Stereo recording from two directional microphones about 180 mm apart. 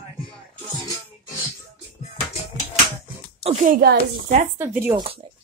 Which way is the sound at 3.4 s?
35° right (ahead or behind).